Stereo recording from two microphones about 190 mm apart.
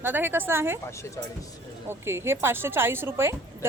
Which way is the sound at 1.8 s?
15° right (ahead or behind).